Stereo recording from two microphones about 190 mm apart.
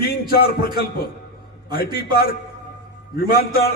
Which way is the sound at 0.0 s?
55° left (ahead or behind).